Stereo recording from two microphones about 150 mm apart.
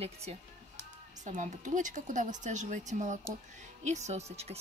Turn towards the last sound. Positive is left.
turn(degrees=-45)  # may be behind; listen again after turning